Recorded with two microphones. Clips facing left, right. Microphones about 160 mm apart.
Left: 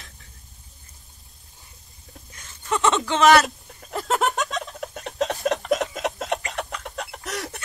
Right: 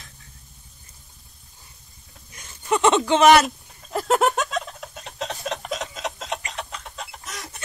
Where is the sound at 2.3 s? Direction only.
15° right (ahead or behind).